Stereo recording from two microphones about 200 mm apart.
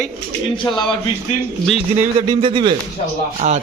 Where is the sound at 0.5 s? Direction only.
25° left (ahead or behind).